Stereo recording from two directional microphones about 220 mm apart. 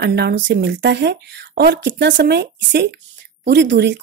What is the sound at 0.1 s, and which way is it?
Speech, 50° right (ahead or behind).